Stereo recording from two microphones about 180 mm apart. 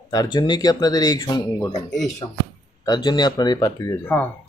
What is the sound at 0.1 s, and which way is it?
Speech, 25° left (ahead or behind).